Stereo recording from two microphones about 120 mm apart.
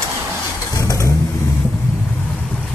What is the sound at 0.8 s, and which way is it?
Vehicle, 25° left (ahead or behind).